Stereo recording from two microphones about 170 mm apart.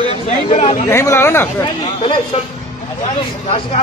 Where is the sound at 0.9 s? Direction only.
15° left (ahead or behind).